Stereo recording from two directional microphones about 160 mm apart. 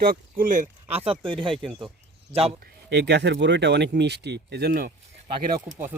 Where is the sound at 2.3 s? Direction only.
40° right (ahead or behind).